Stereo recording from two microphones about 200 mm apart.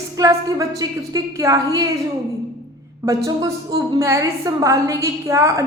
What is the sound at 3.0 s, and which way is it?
A woman's voice, 15° right (ahead or behind).